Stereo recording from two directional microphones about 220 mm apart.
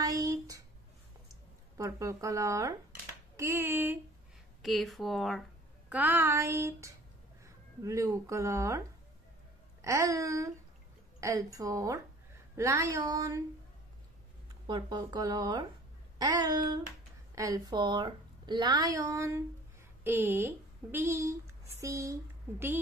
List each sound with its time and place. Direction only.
0.0 s a sound: 15° right (ahead or behind)
1.3 s speech: 15° right (ahead or behind)
14.7 s a woman's voice: 20° right (ahead or behind)